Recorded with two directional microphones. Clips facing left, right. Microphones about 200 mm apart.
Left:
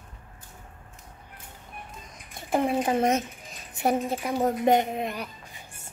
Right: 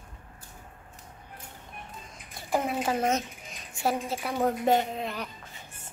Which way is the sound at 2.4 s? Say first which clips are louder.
Left 4 dB; 20° left (ahead or behind).